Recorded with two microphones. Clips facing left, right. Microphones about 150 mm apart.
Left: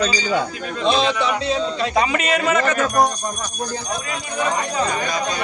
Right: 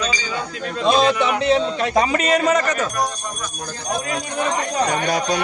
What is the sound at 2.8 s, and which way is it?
Speech, 50° left (ahead or behind).